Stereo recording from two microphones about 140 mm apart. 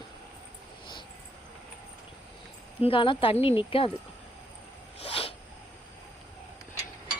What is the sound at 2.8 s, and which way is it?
Speech, 40° left (ahead or behind).